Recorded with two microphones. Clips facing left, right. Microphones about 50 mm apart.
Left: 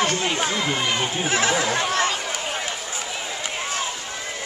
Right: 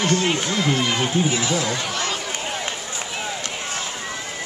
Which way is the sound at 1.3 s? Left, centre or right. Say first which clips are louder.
Left 1 dB; left.